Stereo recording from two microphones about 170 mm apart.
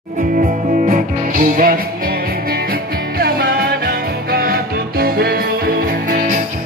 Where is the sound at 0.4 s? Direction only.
50° right (ahead or behind).